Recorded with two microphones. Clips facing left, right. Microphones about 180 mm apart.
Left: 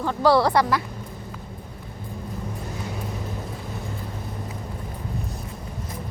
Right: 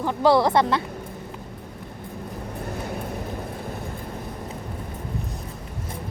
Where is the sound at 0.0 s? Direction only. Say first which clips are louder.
Even; 20° right (ahead or behind).